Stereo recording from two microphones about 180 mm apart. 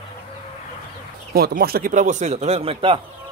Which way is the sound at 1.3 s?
60° right (ahead or behind).